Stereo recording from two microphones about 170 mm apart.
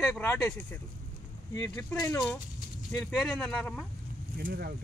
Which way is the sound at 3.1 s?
Centre (ahead or behind).